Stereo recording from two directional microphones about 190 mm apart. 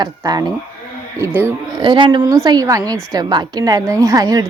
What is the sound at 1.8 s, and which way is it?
Speech, 25° right (ahead or behind).